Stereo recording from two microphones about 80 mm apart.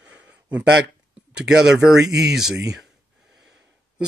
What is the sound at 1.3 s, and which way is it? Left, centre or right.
Speech, centre.